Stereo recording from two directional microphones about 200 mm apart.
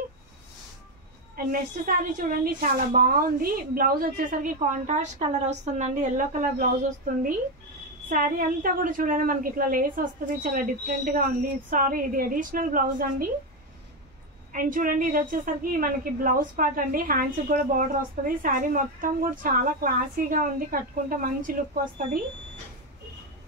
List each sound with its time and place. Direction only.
2.1 s a woman's voice: 45° right (ahead or behind)
8.1 s a woman's voice: 45° right (ahead or behind)
14.5 s a woman's voice: 40° right (ahead or behind)